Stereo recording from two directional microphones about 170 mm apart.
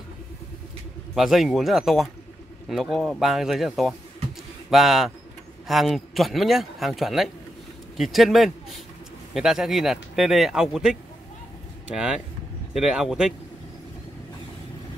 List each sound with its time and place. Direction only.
1.1 s speech: centre (ahead or behind)